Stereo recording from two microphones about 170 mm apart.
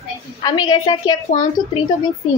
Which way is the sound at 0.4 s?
25° left (ahead or behind).